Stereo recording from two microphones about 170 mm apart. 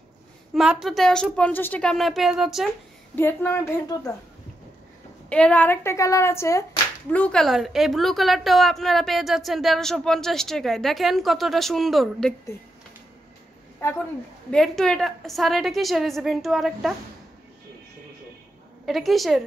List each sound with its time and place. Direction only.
0.6 s a woman's voice: centre (ahead or behind)
3.2 s a woman's voice: 10° left (ahead or behind)
5.3 s a woman's voice: 5° left (ahead or behind)
14.5 s a woman's voice: 5° left (ahead or behind)
18.9 s a woman's voice: centre (ahead or behind)